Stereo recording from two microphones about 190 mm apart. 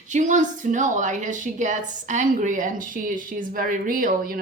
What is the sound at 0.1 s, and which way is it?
Speech, 40° right (ahead or behind).